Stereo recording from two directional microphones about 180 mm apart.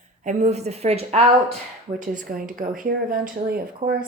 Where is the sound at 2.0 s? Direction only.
45° right (ahead or behind).